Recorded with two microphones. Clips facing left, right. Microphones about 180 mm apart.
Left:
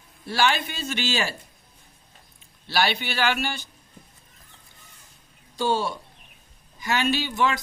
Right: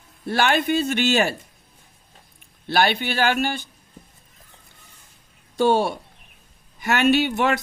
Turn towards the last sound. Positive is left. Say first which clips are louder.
# right 5 dB
turn(degrees=-60)  # may be behind; listen again after turning